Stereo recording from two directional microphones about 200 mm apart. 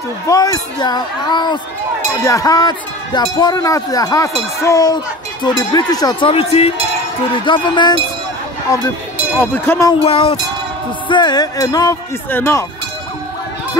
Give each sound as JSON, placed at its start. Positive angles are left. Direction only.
{"t": 0.3, "sound": "speech", "side_deg": 20}
{"t": 9.4, "sound": "speech", "side_deg": 15}
{"t": 10.0, "sound": "speech", "side_deg": 30}